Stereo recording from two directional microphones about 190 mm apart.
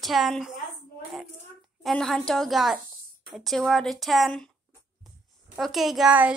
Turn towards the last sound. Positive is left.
turn(degrees=-5)  # may be behind; listen again after turning